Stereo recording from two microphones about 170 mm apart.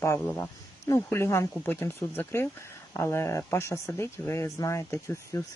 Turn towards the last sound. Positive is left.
turn(degrees=15)  # may be behind; listen again after turning